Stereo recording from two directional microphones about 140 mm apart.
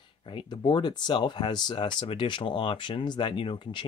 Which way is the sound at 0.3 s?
35° left (ahead or behind).